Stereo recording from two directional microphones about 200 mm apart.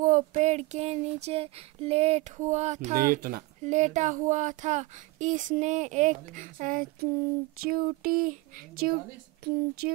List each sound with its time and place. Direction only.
0.0 s speech: 40° right (ahead or behind)